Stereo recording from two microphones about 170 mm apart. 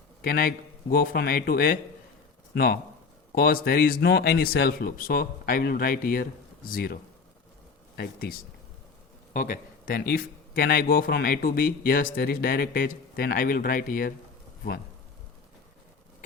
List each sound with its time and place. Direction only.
0.2 s speech: 65° left (ahead or behind)
3.3 s speech: 60° left (ahead or behind)
7.9 s speech: 65° left (ahead or behind)
9.3 s speech: 55° left (ahead or behind)